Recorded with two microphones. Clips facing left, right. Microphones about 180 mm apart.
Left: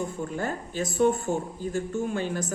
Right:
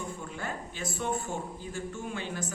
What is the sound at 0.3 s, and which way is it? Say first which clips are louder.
A woman's voice: left 7 dB; 40° left (ahead or behind).